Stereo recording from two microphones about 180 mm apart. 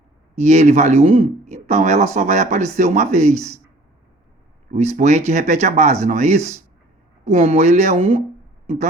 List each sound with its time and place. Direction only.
0.3 s speech: 40° right (ahead or behind)
4.7 s speech: 40° right (ahead or behind)